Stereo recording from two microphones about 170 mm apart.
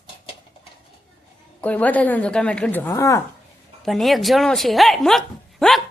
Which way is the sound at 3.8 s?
Centre (ahead or behind).